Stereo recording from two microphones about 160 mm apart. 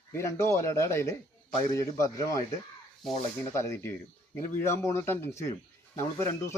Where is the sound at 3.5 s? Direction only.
15° left (ahead or behind).